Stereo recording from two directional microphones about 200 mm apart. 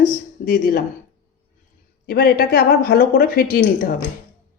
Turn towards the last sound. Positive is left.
turn(degrees=45)  # may be behind; listen again after turning